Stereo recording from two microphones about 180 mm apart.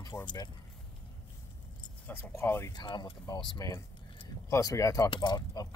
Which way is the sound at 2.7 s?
25° left (ahead or behind).